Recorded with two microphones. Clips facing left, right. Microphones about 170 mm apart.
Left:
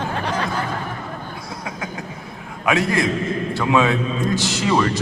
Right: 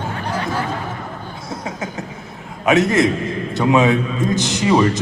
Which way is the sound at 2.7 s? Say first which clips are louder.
Right 5 dB; 20° right (ahead or behind).